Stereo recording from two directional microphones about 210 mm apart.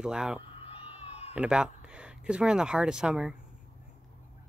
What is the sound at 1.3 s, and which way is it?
Speech, 5° right (ahead or behind).